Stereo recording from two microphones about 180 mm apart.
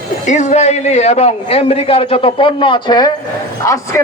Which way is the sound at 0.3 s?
40° left (ahead or behind).